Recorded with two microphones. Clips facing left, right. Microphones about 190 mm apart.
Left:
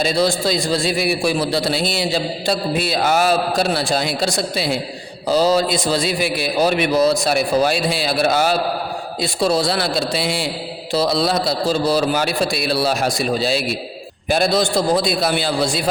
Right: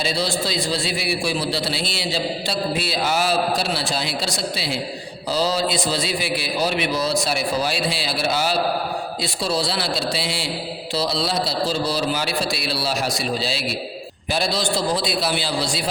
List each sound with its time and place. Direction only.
0.0 s a man's voice: 45° left (ahead or behind)